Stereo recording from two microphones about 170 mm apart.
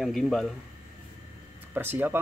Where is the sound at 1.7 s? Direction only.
10° right (ahead or behind).